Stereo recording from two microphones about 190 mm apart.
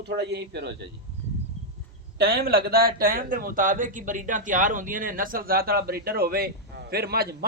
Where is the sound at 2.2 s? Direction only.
55° right (ahead or behind).